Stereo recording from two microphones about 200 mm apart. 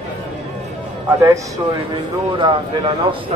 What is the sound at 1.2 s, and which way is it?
A man's voice, 15° right (ahead or behind).